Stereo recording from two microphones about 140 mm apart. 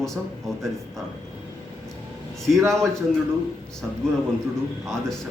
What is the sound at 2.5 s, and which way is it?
Speech, centre (ahead or behind).